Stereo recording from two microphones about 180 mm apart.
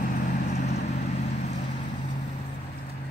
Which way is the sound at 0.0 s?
45° left (ahead or behind).